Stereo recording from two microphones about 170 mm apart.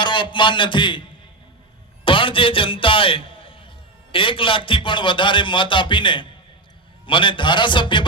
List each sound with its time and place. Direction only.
0.0 s a man's voice: 30° left (ahead or behind)
2.0 s a man's voice: 30° left (ahead or behind)